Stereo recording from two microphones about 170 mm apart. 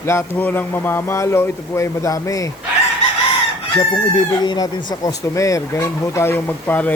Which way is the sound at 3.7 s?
25° left (ahead or behind).